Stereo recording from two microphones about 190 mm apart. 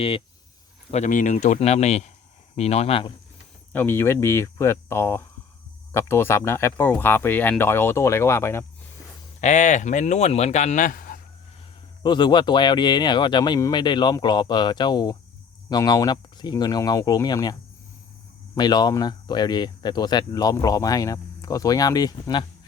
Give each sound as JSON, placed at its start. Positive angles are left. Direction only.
{"t": 0.9, "sound": "speech", "side_deg": 40}
{"t": 3.7, "sound": "speech", "side_deg": 10}
{"t": 9.4, "sound": "speech", "side_deg": 40}
{"t": 12.0, "sound": "speech", "side_deg": 25}